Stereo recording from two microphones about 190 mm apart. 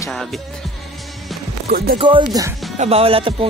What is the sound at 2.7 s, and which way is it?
Speech, 30° right (ahead or behind).